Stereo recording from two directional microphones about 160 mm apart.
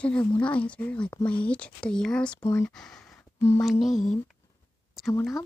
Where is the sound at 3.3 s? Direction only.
15° left (ahead or behind).